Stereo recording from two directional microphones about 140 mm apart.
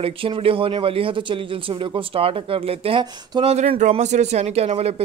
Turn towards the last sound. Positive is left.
turn(degrees=-45)  # may be behind; listen again after turning